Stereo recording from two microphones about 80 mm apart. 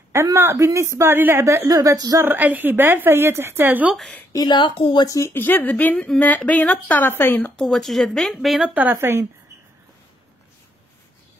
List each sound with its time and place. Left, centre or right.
0.1 s a woman's voice: right
2.2 s speech: right
4.5 s a woman's voice: left
5.0 s speech: left
5.3 s a woman's voice: left
7.5 s speech: centre
8.6 s speech: centre
8.9 s a woman's voice: right